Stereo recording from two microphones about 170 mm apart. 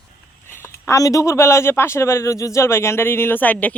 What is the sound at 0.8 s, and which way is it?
A man's voice, 20° left (ahead or behind).